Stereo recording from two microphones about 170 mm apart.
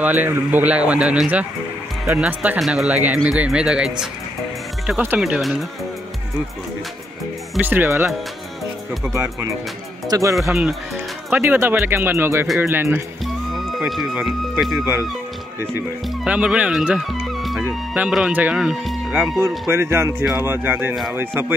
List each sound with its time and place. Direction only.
0.0 s a man's voice: 10° right (ahead or behind)
7.5 s a man's voice: 10° right (ahead or behind)
9.1 s a man's voice: 15° right (ahead or behind)
10.5 s a man's voice: centre (ahead or behind)
13.7 s speech: centre (ahead or behind)
16.3 s speech: 5° right (ahead or behind)
19.2 s a man's voice: 15° right (ahead or behind)